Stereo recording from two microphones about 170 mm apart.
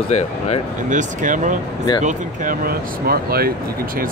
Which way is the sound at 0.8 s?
50° right (ahead or behind).